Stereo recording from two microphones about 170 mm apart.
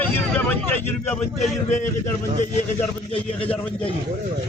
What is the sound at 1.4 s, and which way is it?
Speech, 45° left (ahead or behind).